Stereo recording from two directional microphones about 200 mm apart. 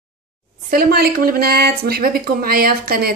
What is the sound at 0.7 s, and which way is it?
Speech, 50° right (ahead or behind).